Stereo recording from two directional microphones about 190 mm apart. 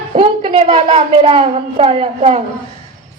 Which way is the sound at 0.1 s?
30° right (ahead or behind).